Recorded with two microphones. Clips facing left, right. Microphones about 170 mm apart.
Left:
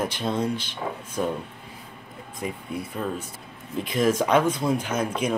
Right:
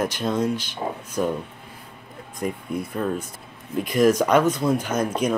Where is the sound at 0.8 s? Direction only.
30° right (ahead or behind).